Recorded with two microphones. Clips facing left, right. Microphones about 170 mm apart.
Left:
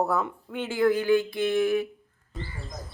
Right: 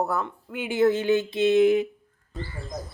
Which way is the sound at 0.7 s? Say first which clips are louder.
Right 1 dB; 25° right (ahead or behind).